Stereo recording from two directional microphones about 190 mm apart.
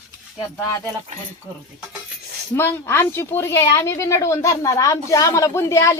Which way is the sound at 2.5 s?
15° left (ahead or behind).